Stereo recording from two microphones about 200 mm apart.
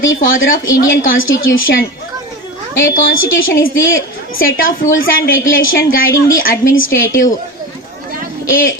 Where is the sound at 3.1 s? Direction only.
80° left.